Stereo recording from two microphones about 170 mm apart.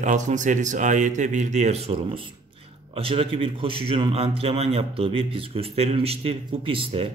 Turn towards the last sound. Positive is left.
turn(degrees=-30)  # may be behind; listen again after turning